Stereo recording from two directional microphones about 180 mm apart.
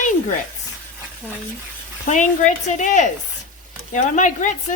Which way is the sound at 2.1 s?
40° left (ahead or behind).